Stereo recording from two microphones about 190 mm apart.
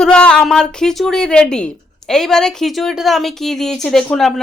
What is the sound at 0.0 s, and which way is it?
A woman's voice, 5° left (ahead or behind).